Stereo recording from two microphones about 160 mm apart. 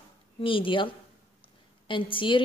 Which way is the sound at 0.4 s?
35° left (ahead or behind).